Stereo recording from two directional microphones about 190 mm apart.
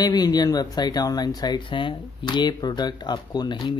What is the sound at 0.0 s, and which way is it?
Speech, 20° left (ahead or behind).